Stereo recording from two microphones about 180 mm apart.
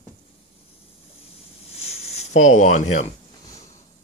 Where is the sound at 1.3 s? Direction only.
35° left (ahead or behind).